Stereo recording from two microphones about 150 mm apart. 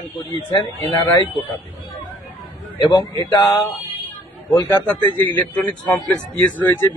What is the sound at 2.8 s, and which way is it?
Speech, 25° left (ahead or behind).